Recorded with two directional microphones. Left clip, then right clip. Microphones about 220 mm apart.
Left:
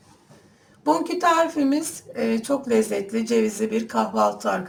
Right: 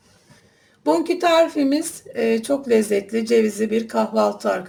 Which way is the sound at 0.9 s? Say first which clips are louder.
Right 3 dB; 40° right (ahead or behind).